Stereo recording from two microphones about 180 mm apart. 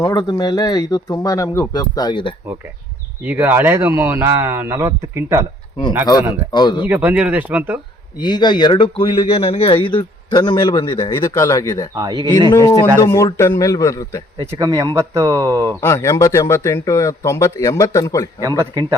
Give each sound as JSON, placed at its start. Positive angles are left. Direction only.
{"t": 0.0, "sound": "speech", "side_deg": 20}
{"t": 3.2, "sound": "speech", "side_deg": -10}
{"t": 6.5, "sound": "speech", "side_deg": 25}
{"t": 6.8, "sound": "speech", "side_deg": -10}
{"t": 8.2, "sound": "speech", "side_deg": 25}
{"t": 11.9, "sound": "speech", "side_deg": -20}
{"t": 12.5, "sound": "speech", "side_deg": 20}
{"t": 14.4, "sound": "speech", "side_deg": -15}
{"t": 15.8, "sound": "speech", "side_deg": 15}
{"t": 18.4, "sound": "speech", "side_deg": -20}